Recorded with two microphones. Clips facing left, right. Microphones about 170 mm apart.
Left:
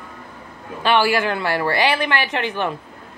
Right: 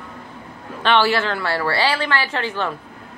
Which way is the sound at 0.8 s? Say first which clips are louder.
Even; 10° left (ahead or behind).